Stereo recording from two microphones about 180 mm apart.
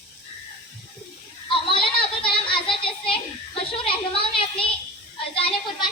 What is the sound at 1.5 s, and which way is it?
Children playing, 30° left (ahead or behind).